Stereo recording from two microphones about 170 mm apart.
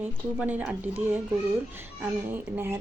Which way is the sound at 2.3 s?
15° right (ahead or behind).